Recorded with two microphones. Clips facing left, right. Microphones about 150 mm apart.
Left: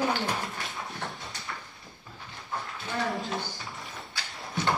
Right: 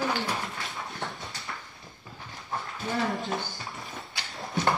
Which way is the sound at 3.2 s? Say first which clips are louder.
Right 1 dB; centre (ahead or behind).